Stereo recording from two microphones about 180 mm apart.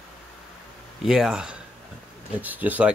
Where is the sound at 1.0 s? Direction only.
5° right (ahead or behind).